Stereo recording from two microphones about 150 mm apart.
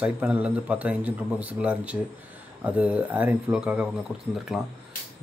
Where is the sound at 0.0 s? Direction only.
10° right (ahead or behind).